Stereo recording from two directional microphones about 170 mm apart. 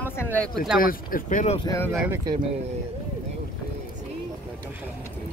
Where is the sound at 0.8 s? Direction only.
55° left (ahead or behind).